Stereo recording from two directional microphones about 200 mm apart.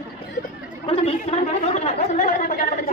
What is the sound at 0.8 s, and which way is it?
Chatter, 30° left (ahead or behind).